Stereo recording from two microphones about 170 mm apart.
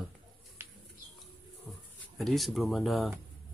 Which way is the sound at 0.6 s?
15° right (ahead or behind).